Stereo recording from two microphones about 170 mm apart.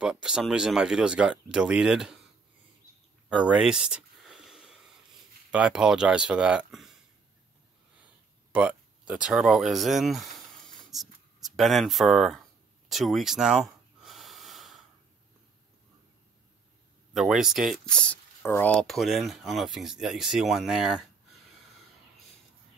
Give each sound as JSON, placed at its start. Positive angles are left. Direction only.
{"t": 0.0, "sound": "speech", "side_deg": -5}
{"t": 3.3, "sound": "a sound", "side_deg": -5}
{"t": 5.5, "sound": "speech", "side_deg": -5}
{"t": 8.5, "sound": "speech", "side_deg": -10}
{"t": 10.7, "sound": "a sound", "side_deg": 0}
{"t": 14.0, "sound": "wheeze", "side_deg": 0}
{"t": 17.1, "sound": "speech", "side_deg": 0}